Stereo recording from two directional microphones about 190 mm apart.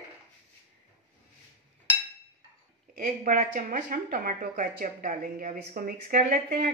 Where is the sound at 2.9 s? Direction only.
45° right (ahead or behind).